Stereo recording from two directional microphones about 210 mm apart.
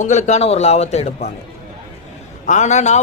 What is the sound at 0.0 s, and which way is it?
A man's voice, 35° left (ahead or behind).